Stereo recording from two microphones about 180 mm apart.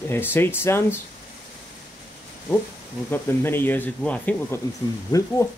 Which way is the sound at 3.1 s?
10° left (ahead or behind).